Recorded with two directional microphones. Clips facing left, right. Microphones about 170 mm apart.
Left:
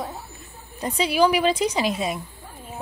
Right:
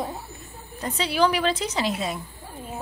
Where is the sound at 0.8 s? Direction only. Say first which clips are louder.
Left 3 dB; 15° left (ahead or behind).